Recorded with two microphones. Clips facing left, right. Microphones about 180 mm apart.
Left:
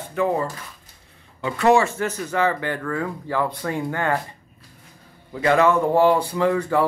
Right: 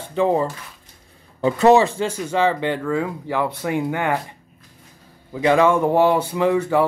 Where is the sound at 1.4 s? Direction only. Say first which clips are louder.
Right 4 dB; 20° right (ahead or behind).